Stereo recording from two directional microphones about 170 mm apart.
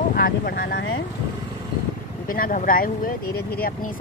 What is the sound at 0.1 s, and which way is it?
Speech, 60° left (ahead or behind).